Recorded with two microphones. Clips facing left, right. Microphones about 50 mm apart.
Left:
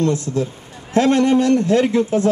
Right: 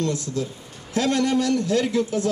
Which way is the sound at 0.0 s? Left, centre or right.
Left.